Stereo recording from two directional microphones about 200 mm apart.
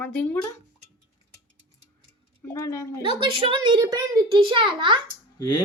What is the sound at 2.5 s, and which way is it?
Speech, 15° left (ahead or behind).